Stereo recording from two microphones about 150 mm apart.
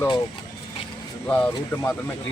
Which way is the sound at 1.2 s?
10° left (ahead or behind).